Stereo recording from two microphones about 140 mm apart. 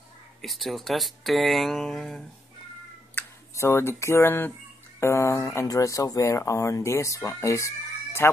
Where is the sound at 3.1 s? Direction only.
20° left (ahead or behind).